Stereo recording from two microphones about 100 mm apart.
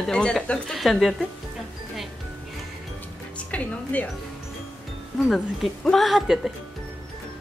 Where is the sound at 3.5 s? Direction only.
15° left (ahead or behind).